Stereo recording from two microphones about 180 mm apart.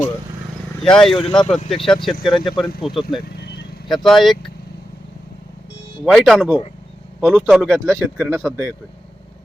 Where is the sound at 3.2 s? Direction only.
60° left (ahead or behind).